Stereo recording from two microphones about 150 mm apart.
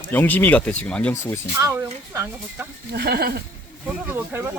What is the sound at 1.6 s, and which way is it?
Speech, 20° right (ahead or behind).